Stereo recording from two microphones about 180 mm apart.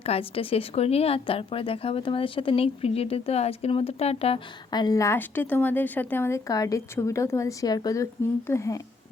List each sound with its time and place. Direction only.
0.0 s speech: 30° left (ahead or behind)
4.7 s a woman's voice: 20° left (ahead or behind)